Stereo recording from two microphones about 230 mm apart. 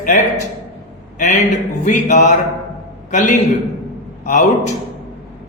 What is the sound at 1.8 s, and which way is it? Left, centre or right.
Speech, left.